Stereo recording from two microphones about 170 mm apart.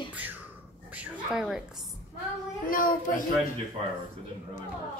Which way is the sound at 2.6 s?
55° left (ahead or behind).